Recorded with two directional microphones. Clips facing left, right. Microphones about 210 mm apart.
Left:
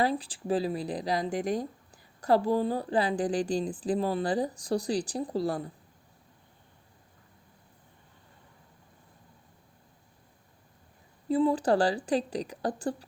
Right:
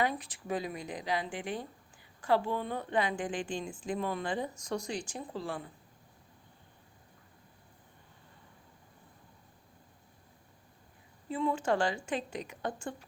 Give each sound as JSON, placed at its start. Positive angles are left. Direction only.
{"t": 0.0, "sound": "speech", "side_deg": 30}
{"t": 11.3, "sound": "speech", "side_deg": 35}